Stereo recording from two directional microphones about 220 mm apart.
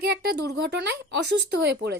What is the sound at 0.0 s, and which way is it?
Speech, 45° right (ahead or behind).